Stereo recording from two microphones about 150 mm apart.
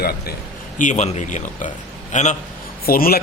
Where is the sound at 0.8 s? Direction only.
55° left (ahead or behind).